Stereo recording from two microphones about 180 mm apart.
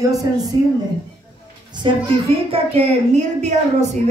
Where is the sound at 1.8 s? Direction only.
30° right (ahead or behind).